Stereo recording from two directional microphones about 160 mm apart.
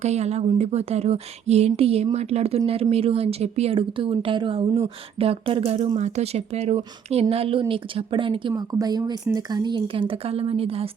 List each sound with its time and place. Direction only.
0.0 s speech: 45° right (ahead or behind)